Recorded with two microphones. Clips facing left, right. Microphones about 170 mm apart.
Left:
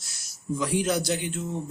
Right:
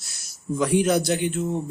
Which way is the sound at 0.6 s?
60° right (ahead or behind).